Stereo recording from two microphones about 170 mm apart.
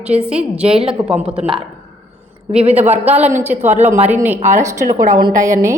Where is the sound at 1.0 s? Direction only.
5° right (ahead or behind).